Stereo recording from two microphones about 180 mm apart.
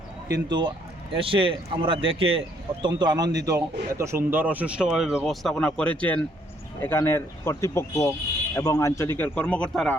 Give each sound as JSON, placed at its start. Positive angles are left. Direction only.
{"t": 0.4, "sound": "a man's voice", "side_deg": -25}